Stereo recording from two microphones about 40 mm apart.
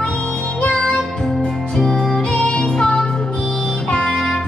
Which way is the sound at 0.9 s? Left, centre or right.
Centre.